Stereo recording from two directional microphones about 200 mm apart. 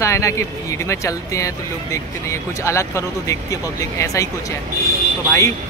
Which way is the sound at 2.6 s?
15° left (ahead or behind).